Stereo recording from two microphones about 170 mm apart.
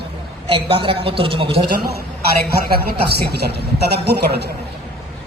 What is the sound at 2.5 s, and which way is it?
A woman's voice, 65° right (ahead or behind).